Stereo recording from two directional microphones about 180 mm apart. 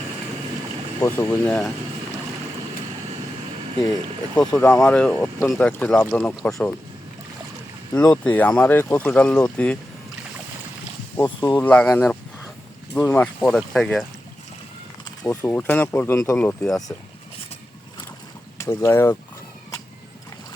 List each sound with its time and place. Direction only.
1.0 s speech: 15° left (ahead or behind)
4.6 s speech: 5° left (ahead or behind)
7.9 s speech: 5° left (ahead or behind)
11.2 s speech: 20° left (ahead or behind)
11.5 s speech: 10° left (ahead or behind)
15.0 s a sound: 20° left (ahead or behind)
15.4 s speech: 10° left (ahead or behind)
18.5 s speech: 15° left (ahead or behind)